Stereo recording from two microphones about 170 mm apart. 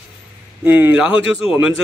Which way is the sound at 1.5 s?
15° right (ahead or behind).